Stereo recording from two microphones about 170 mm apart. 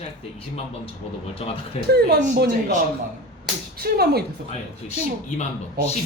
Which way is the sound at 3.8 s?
65° right (ahead or behind).